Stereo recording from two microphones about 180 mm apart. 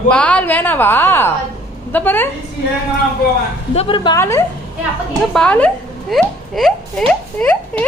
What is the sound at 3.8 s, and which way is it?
Speech, 30° left (ahead or behind).